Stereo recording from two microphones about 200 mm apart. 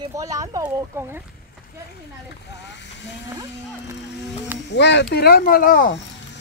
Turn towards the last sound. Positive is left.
turn(degrees=45)  # may be behind; listen again after turning